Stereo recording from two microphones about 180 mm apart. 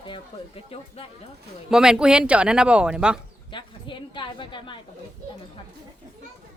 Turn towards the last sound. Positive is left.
turn(degrees=25)  # may be behind; listen again after turning